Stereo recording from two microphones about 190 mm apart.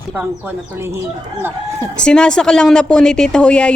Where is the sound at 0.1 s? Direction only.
10° right (ahead or behind).